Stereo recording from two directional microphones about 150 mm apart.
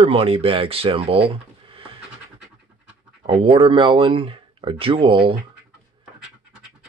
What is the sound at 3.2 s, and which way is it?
Speech, 35° right (ahead or behind).